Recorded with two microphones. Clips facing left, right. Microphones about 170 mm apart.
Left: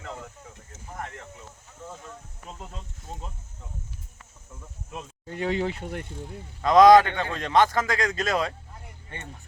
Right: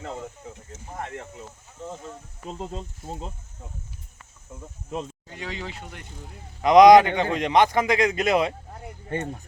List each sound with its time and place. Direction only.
0.7 s a sound: 25° right (ahead or behind)
1.9 s insect: 25° right (ahead or behind)
5.3 s speech: 50° left (ahead or behind)
6.6 s speech: 15° right (ahead or behind)
9.0 s speech: 40° right (ahead or behind)